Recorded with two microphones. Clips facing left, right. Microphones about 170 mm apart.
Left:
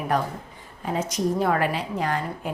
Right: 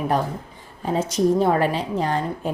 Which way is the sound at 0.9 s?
30° right (ahead or behind).